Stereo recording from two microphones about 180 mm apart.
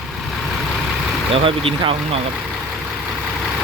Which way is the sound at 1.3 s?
30° right (ahead or behind).